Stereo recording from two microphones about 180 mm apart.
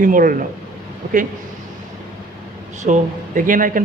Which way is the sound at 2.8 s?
45° right (ahead or behind).